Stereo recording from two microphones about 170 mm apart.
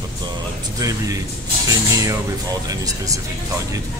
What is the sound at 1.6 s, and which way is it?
Speech, 20° right (ahead or behind).